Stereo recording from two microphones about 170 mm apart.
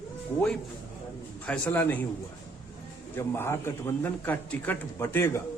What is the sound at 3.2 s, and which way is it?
A man's voice, 15° left (ahead or behind).